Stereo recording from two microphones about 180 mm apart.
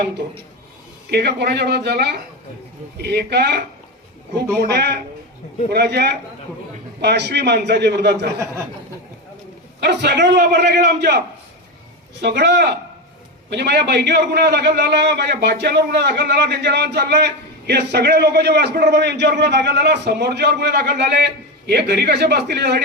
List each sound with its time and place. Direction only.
1.1 s a man's voice: 65° right (ahead or behind)
9.8 s a man's voice: 65° right (ahead or behind)
12.2 s a man's voice: 70° right (ahead or behind)